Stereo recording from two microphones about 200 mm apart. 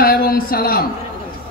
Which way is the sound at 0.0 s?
50° left (ahead or behind).